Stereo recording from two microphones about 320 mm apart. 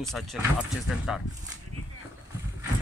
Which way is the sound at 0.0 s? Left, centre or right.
Centre.